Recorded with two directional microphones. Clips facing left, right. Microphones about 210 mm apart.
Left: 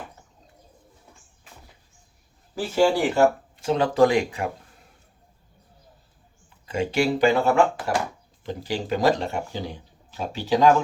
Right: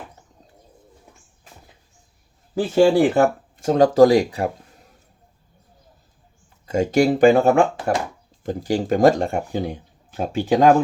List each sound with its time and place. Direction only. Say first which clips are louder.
2.9 s speech: right 4 dB; 50° right (ahead or behind)
6.7 s speech: right 6 dB; 45° right (ahead or behind)